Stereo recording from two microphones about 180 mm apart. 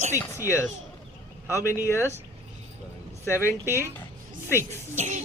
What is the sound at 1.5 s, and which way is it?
Speech, 15° left (ahead or behind).